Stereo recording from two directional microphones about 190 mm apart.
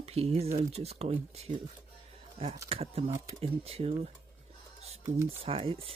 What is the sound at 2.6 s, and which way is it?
Speech, 30° right (ahead or behind).